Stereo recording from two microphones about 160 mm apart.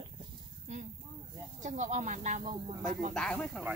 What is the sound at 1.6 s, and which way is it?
Speech, 45° right (ahead or behind).